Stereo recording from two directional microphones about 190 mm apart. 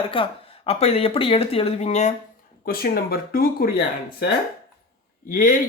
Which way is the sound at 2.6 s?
50° left (ahead or behind).